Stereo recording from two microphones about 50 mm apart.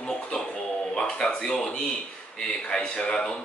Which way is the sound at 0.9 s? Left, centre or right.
Centre.